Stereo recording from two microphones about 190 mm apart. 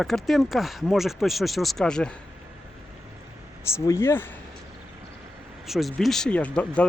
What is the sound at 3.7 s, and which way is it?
Speech, 15° left (ahead or behind).